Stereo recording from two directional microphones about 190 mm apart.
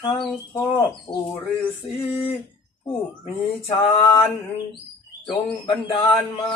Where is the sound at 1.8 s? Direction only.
30° left (ahead or behind).